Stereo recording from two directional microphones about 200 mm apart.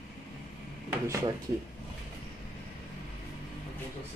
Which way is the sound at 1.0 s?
15° right (ahead or behind).